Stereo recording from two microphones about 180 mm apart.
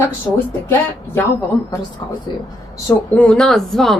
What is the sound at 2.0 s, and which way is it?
Speech, 20° left (ahead or behind).